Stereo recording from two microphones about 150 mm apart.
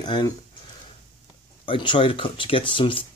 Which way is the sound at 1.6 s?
35° left (ahead or behind).